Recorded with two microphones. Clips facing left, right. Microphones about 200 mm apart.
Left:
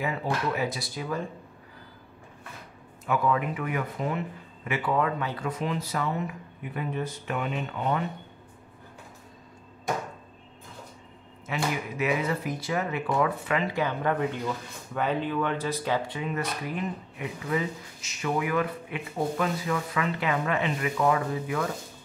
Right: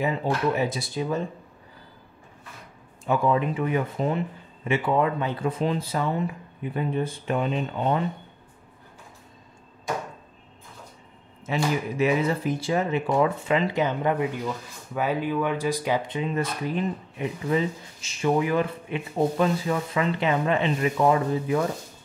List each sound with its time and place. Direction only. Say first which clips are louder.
0.0 s speech: right 4 dB; 25° right (ahead or behind)
3.1 s speech: right 3 dB; 25° right (ahead or behind)
11.4 s speech: right 5 dB; 30° right (ahead or behind)